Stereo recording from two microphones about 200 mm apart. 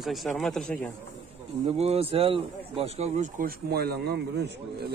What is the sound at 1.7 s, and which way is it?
Speech, 30° right (ahead or behind).